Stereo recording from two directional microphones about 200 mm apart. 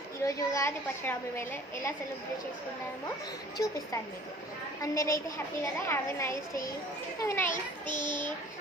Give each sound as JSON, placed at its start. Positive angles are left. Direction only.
{"t": 0.3, "sound": "a woman's voice", "side_deg": 15}
{"t": 3.6, "sound": "a woman's voice", "side_deg": 15}
{"t": 7.5, "sound": "child singing", "side_deg": 40}